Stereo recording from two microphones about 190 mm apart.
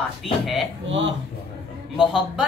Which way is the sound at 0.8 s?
80° right.